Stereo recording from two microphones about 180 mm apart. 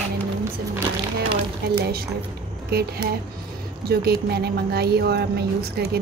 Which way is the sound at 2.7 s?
60° right (ahead or behind).